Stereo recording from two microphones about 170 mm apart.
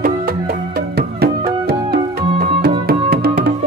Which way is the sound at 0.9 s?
70° right (ahead or behind).